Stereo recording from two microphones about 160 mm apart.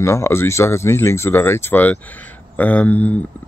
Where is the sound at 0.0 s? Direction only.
15° left (ahead or behind).